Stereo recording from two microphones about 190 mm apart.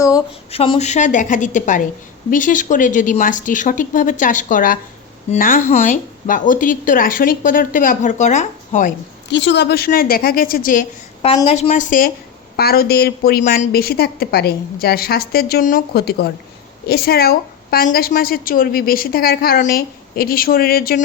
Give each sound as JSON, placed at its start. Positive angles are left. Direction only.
{"t": 0.5, "sound": "a woman's voice", "side_deg": 30}
{"t": 9.3, "sound": "a woman's voice", "side_deg": 70}
{"t": 11.3, "sound": "a woman's voice", "side_deg": 30}